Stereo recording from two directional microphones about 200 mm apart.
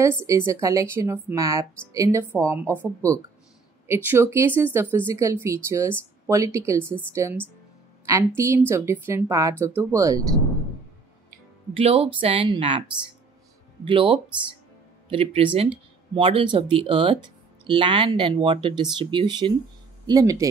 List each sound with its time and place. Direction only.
0.5 s speech: 15° right (ahead or behind)
6.8 s speech: 5° left (ahead or behind)
7.2 s a woman's voice: 15° right (ahead or behind)
11.7 s speech: 30° right (ahead or behind)
13.8 s speech: 25° right (ahead or behind)